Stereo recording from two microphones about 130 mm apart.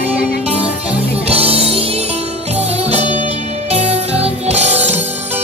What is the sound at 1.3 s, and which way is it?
Music, 50° right (ahead or behind).